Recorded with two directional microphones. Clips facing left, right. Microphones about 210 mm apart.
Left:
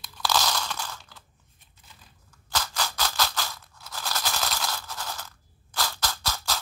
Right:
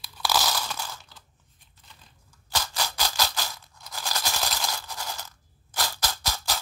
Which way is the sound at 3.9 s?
10° right (ahead or behind).